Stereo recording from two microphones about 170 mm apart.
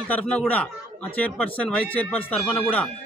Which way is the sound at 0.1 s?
10° left (ahead or behind).